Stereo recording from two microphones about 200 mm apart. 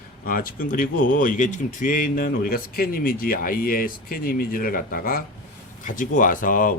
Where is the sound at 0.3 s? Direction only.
45° left (ahead or behind).